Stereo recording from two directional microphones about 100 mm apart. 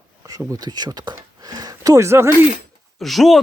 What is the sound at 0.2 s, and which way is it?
Speech, 35° right (ahead or behind).